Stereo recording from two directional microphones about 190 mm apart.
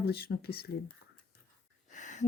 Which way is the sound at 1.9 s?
40° left (ahead or behind).